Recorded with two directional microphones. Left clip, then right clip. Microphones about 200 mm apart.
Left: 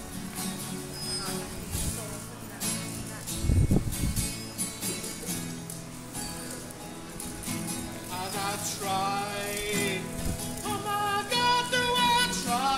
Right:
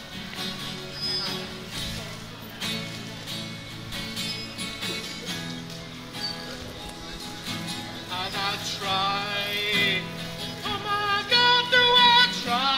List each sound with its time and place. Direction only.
8.1 s music: centre (ahead or behind)